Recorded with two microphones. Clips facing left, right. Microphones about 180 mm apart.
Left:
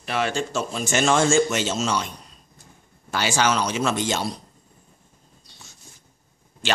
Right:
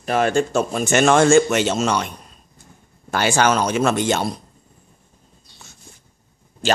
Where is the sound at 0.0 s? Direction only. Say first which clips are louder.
Right 7 dB; 45° right (ahead or behind).